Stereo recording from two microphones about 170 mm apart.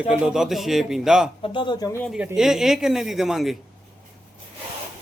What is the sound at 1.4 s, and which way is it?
Speech, 30° left (ahead or behind).